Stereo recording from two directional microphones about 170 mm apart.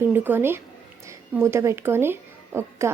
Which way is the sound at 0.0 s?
10° right (ahead or behind).